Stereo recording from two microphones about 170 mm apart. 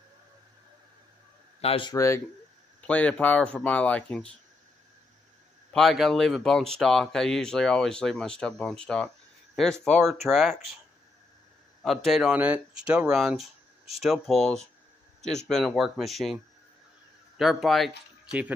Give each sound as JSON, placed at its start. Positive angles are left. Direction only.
{"t": 1.6, "sound": "speech", "side_deg": 35}
{"t": 1.9, "sound": "speech", "side_deg": 15}
{"t": 5.7, "sound": "speech", "side_deg": 0}
{"t": 11.8, "sound": "speech", "side_deg": 0}
{"t": 17.4, "sound": "speech", "side_deg": 0}